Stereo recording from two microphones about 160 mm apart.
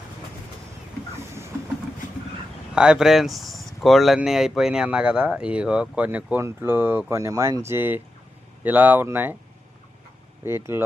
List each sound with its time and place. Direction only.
2.7 s speech: 5° right (ahead or behind)
10.4 s speech: 15° right (ahead or behind)